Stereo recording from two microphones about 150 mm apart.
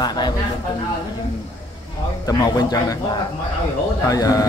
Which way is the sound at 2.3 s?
25° left (ahead or behind).